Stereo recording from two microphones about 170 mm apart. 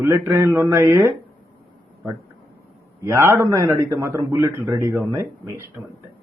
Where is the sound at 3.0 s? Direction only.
15° right (ahead or behind).